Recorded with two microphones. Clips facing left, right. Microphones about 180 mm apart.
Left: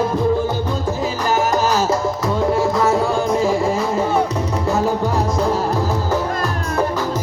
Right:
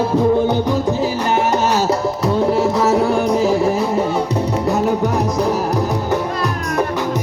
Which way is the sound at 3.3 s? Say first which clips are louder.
Right 2 dB; 20° right (ahead or behind).